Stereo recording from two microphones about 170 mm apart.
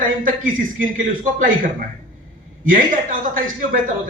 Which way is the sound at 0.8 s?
50° right (ahead or behind).